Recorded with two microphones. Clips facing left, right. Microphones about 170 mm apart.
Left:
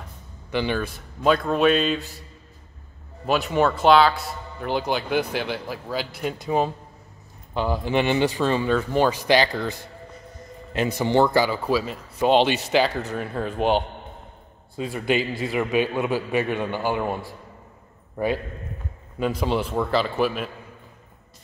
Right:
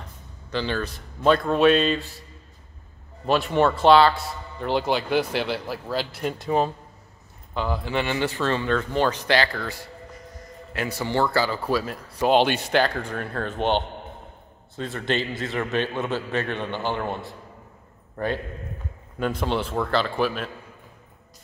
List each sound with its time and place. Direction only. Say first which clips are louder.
0.5 s speech: left 2 dB; 15° left (ahead or behind)
3.3 s speech: even; centre (ahead or behind)
7.5 s speech: left 3 dB; 15° left (ahead or behind)
11.9 s a man's voice: even; centre (ahead or behind)